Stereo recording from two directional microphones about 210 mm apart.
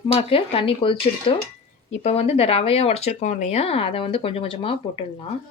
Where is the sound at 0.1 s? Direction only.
25° left (ahead or behind).